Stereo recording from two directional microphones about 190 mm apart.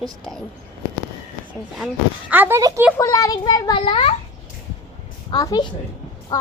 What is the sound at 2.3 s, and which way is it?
Speech, 10° right (ahead or behind).